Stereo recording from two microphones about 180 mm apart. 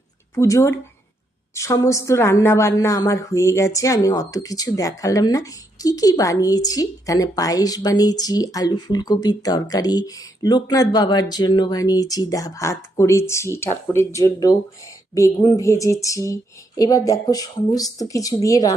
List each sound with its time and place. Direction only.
0.3 s a woman's voice: 15° left (ahead or behind)